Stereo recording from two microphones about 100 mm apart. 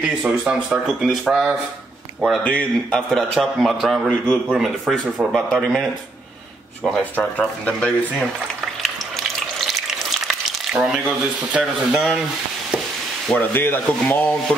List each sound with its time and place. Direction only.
0.4 s a man's voice: 5° right (ahead or behind)
2.4 s a man's voice: 10° left (ahead or behind)
7.0 s speech: 15° left (ahead or behind)
9.6 s frying: centre (ahead or behind)
10.7 s speech: 5° right (ahead or behind)
13.3 s rub: 20° left (ahead or behind)